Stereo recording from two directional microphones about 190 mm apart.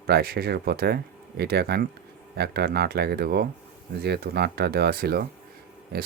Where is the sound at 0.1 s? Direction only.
55° right (ahead or behind).